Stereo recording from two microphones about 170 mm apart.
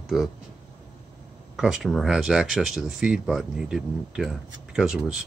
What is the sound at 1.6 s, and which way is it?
Speech, 5° right (ahead or behind).